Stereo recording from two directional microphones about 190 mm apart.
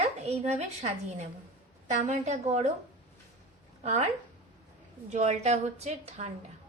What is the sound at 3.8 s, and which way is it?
Speech, 35° right (ahead or behind).